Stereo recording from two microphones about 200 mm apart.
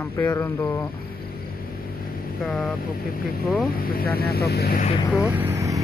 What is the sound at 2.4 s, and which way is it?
Speech, centre (ahead or behind).